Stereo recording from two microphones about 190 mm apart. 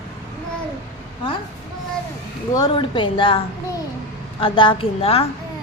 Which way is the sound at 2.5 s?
20° left (ahead or behind).